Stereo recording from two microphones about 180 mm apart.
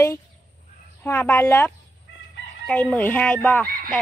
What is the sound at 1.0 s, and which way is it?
Speech, 10° left (ahead or behind).